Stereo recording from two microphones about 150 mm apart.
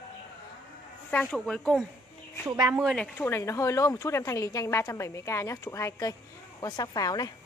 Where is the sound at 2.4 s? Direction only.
20° right (ahead or behind).